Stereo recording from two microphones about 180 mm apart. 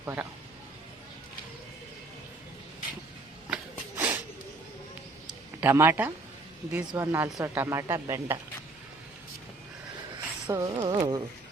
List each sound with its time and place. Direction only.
0.0 s speech: 15° right (ahead or behind)
3.5 s a sound: 10° right (ahead or behind)
5.5 s speech: 10° right (ahead or behind)
10.5 s speech: 20° right (ahead or behind)